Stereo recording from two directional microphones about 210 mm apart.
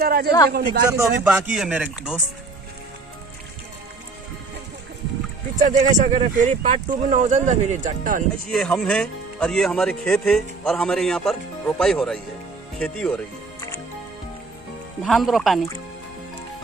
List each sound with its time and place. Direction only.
0.0 s a man's voice: 45° right (ahead or behind)
0.9 s a man's voice: 5° right (ahead or behind)
5.6 s speech: 35° right (ahead or behind)
8.5 s a man's voice: 5° left (ahead or behind)
12.7 s music: 5° left (ahead or behind)
15.0 s a man's voice: centre (ahead or behind)